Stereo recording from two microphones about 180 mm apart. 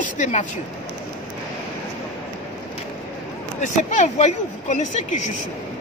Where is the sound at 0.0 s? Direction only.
40° left (ahead or behind).